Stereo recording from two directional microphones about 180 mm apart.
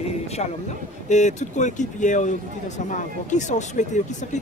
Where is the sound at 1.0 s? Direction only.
40° left (ahead or behind).